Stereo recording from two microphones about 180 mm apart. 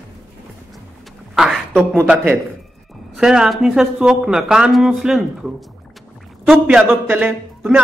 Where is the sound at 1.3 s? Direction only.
Centre (ahead or behind).